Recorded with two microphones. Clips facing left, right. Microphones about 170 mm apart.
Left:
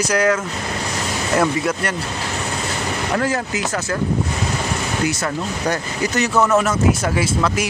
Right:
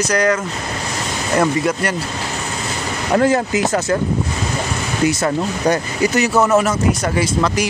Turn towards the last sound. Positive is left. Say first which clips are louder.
# right 2 dB
turn(degrees=5)  # may be behind; listen again after turning